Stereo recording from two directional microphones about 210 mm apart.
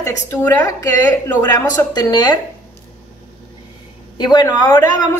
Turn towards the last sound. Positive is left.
turn(degrees=20)  # may be behind; listen again after turning